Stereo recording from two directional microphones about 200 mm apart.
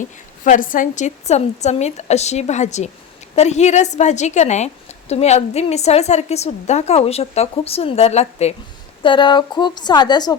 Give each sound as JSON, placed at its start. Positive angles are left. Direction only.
{"t": 0.4, "sound": "a woman's voice", "side_deg": 40}